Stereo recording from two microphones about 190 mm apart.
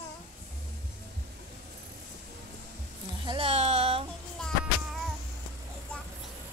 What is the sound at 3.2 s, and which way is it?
Music, 25° right (ahead or behind).